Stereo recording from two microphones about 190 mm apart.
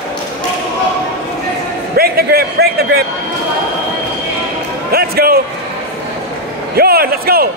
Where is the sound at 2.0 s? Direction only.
55° right (ahead or behind).